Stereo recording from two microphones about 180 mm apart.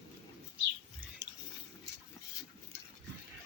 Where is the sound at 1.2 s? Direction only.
70° right (ahead or behind).